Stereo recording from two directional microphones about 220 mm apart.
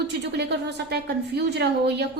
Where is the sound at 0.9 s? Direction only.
50° right (ahead or behind).